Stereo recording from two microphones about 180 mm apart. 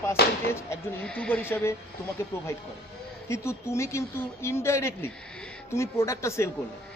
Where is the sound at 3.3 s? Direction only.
15° left (ahead or behind).